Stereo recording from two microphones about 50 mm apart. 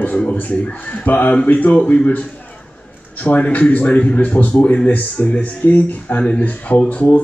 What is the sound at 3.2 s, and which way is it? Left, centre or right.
Speech, left.